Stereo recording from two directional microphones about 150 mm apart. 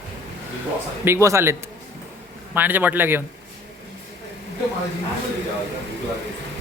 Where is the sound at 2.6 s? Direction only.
10° right (ahead or behind).